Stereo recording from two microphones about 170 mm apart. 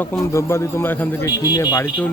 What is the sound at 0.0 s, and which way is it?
A man's voice, 15° left (ahead or behind).